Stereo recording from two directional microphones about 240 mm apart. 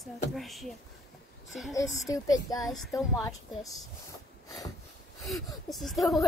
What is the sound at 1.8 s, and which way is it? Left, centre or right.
Speech, centre.